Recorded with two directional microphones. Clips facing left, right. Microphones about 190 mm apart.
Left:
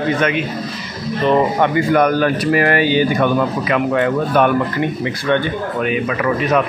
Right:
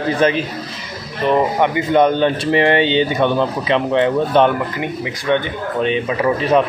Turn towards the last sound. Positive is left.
turn(degrees=-30)  # may be behind; listen again after turning